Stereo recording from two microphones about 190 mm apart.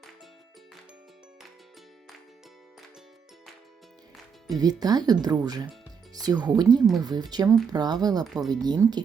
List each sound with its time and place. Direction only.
4.4 s speech: 20° right (ahead or behind)
8.2 s speech: centre (ahead or behind)
8.4 s speech: 20° right (ahead or behind)